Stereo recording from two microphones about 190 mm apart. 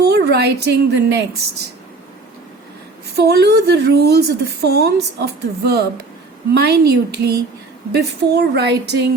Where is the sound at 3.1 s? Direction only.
60° right (ahead or behind).